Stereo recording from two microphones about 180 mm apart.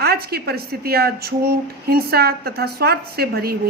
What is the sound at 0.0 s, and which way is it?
A woman's voice, 60° right (ahead or behind).